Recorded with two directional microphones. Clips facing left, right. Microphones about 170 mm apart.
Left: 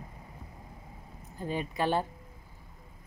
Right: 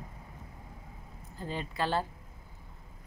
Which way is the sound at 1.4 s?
15° left (ahead or behind).